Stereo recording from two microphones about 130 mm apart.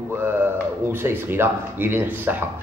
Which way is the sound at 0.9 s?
15° right (ahead or behind).